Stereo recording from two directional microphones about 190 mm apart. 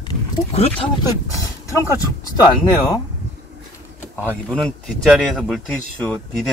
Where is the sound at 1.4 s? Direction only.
15° left (ahead or behind).